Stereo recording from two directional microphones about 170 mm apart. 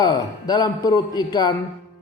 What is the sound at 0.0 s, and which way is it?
Speech, 25° left (ahead or behind).